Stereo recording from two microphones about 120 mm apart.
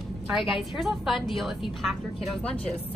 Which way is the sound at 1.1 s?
45° left (ahead or behind).